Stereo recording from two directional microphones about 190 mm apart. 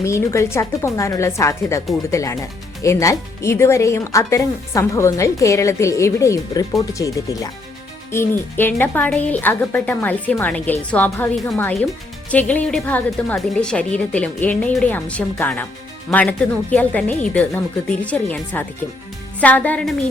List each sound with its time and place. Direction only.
0.0 s speech: 15° left (ahead or behind)